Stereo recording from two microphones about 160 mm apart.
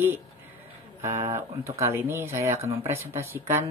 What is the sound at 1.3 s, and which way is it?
Speech, 15° right (ahead or behind).